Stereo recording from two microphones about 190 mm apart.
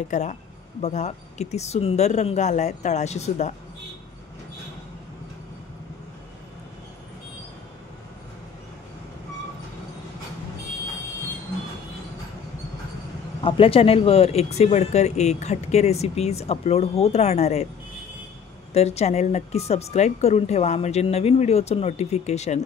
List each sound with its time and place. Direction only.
0.1 s speech: 40° left (ahead or behind)
13.4 s speech: 30° left (ahead or behind)
18.7 s speech: 35° left (ahead or behind)